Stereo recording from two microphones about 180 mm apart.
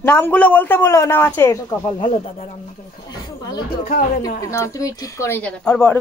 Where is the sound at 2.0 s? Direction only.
35° left (ahead or behind).